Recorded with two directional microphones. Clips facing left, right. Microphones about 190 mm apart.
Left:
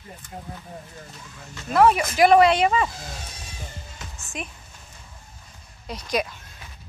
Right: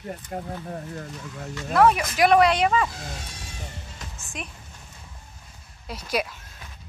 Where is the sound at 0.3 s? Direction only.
55° right (ahead or behind).